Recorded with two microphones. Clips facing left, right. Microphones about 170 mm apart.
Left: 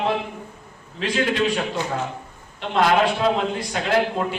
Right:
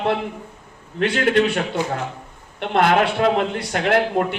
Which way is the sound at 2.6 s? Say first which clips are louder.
Right 1 dB; 60° right (ahead or behind).